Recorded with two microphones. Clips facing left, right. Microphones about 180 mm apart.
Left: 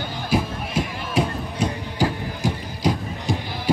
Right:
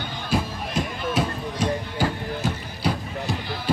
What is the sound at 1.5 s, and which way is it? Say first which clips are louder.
Music: right 2 dB; 10° left (ahead or behind).